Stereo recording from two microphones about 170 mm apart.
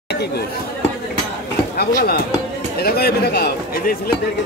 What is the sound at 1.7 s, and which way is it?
Speech, 60° left (ahead or behind).